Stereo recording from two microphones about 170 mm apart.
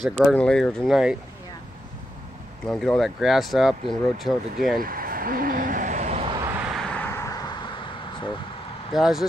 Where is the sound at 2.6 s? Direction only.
5° left (ahead or behind).